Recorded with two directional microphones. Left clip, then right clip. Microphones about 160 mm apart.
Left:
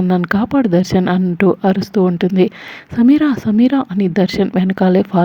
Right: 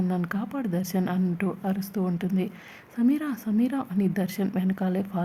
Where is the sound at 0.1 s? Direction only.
45° left (ahead or behind).